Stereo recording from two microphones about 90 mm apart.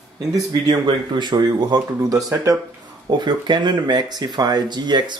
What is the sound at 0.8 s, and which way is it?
Speech, 55° right (ahead or behind).